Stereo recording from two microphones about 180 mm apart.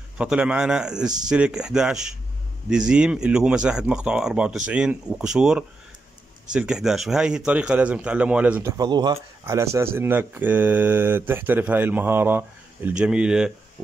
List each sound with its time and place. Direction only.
0.2 s speech: 5° right (ahead or behind)
8.7 s speech: 25° right (ahead or behind); by 13.5 s 5° right (ahead or behind)